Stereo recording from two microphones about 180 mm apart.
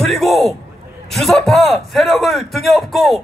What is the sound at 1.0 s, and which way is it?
A man's voice, centre (ahead or behind).